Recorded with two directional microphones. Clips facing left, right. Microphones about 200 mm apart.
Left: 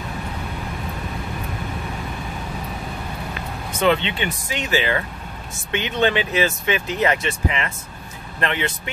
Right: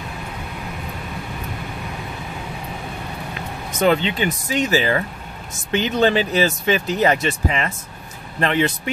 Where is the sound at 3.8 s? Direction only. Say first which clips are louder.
Right 2 dB; 40° right (ahead or behind).